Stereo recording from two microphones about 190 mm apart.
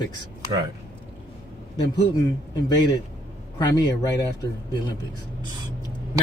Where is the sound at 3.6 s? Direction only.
20° left (ahead or behind).